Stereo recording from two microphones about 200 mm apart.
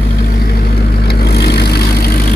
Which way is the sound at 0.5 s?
50° left (ahead or behind).